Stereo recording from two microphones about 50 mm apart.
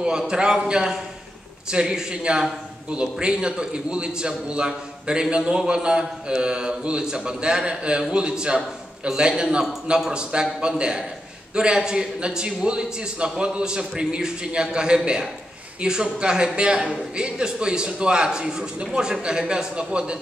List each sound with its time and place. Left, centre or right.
0.3 s a man's voice: centre